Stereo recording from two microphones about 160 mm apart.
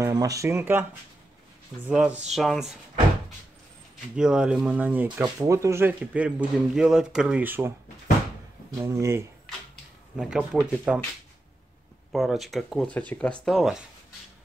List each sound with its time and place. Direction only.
0.0 s speech: 20° right (ahead or behind)
1.9 s speech: 5° right (ahead or behind)
4.2 s speech: 5° right (ahead or behind)
5.0 s speech: 25° right (ahead or behind)
8.7 s speech: 15° right (ahead or behind)
10.1 s speech: 5° right (ahead or behind)
12.1 s speech: centre (ahead or behind)